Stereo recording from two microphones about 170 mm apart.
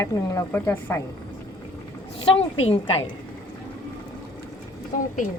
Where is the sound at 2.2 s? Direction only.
35° left (ahead or behind).